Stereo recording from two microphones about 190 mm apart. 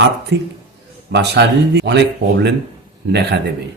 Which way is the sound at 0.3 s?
60° right (ahead or behind).